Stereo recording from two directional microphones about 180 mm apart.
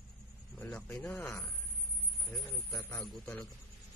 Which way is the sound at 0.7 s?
10° left (ahead or behind).